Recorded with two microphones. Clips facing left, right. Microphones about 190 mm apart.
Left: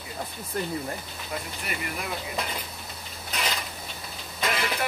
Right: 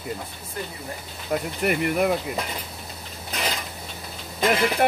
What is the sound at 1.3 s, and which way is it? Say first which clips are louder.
Speech: right 11 dB; 60° right (ahead or behind).